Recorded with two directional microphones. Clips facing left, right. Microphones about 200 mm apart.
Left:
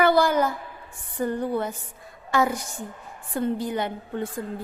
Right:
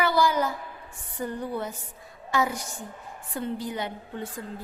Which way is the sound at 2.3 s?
55° left (ahead or behind).